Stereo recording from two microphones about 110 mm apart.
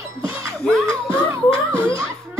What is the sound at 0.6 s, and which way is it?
Music, 5° left (ahead or behind).